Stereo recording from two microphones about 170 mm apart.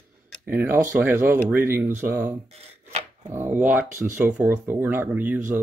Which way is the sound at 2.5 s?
40° right (ahead or behind).